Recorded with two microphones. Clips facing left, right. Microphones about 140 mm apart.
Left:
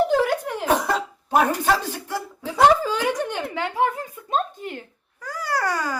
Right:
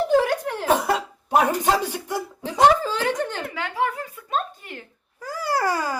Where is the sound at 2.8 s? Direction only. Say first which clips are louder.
Left 1 dB; 10° left (ahead or behind).